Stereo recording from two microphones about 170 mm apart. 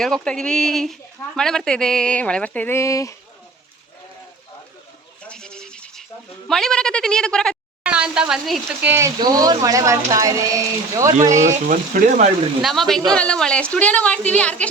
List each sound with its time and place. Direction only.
0.0 s speech: 5° left (ahead or behind); by 3.2 s 20° left (ahead or behind)
5.2 s goat: 5° left (ahead or behind)
6.5 s speech: 5° left (ahead or behind)
8.9 s speech: 15° right (ahead or behind)
11.2 s speech: 45° right (ahead or behind)
12.6 s speech: centre (ahead or behind)